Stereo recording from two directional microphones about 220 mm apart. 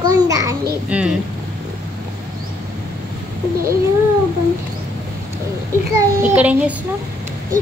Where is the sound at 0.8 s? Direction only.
5° right (ahead or behind).